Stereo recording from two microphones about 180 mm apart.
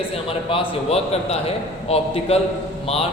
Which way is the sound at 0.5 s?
35° left (ahead or behind).